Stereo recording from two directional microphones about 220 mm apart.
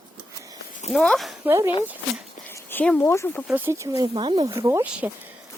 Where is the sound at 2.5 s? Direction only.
10° left (ahead or behind).